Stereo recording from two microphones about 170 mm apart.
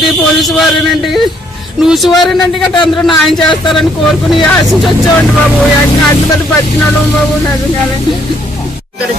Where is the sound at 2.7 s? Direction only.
25° left (ahead or behind).